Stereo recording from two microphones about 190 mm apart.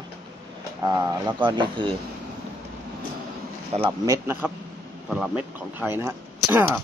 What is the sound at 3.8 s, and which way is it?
Speech, 20° right (ahead or behind).